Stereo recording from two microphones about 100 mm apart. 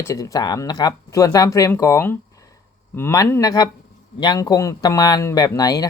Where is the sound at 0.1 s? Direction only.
35° left (ahead or behind).